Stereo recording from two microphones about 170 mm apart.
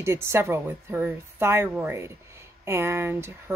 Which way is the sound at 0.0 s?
15° right (ahead or behind).